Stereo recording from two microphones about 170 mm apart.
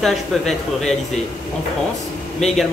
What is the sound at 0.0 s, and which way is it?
Speech, centre (ahead or behind).